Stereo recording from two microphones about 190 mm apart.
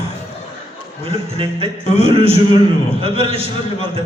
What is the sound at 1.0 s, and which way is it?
Speech, 30° right (ahead or behind).